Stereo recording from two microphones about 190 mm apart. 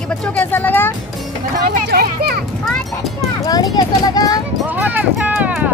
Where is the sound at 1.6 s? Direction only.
50° right (ahead or behind).